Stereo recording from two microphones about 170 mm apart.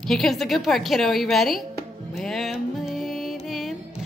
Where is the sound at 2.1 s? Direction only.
Centre (ahead or behind).